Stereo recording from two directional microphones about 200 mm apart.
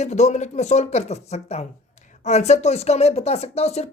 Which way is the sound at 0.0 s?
35° left (ahead or behind).